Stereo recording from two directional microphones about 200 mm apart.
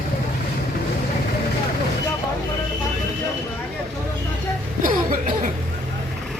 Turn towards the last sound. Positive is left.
turn(degrees=-45)  # may be behind; listen again after turning